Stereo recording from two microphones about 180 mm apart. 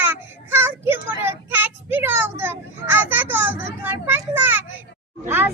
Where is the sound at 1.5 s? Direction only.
10° right (ahead or behind).